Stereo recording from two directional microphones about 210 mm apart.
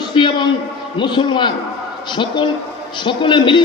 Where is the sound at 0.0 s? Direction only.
20° left (ahead or behind).